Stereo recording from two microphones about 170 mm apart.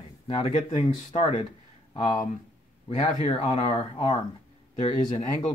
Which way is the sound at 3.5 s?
35° left (ahead or behind).